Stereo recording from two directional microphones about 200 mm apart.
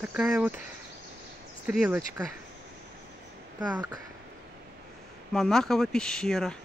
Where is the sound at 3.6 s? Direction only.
5° right (ahead or behind).